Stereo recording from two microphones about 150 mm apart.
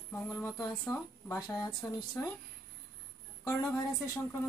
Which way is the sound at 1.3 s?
25° left (ahead or behind).